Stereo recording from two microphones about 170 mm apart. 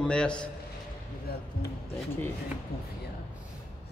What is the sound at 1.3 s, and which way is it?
Speech, 65° left (ahead or behind).